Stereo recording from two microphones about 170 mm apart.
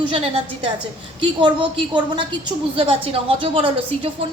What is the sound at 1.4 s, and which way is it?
A woman's voice, 30° right (ahead or behind).